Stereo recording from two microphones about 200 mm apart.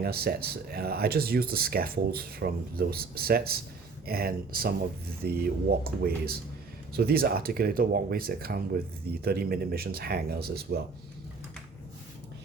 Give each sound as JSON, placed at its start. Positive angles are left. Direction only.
{"t": 0.0, "sound": "speech", "side_deg": -50}